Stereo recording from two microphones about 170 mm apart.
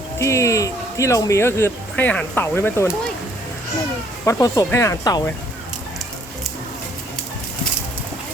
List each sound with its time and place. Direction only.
0.2 s speech: 20° left (ahead or behind)
4.3 s speech: 20° left (ahead or behind)